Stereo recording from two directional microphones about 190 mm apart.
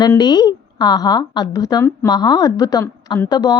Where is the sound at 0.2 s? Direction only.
20° left (ahead or behind).